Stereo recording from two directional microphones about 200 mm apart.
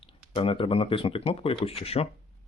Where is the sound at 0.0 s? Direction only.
25° left (ahead or behind).